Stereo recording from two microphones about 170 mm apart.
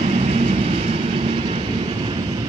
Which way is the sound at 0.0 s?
40° right (ahead or behind).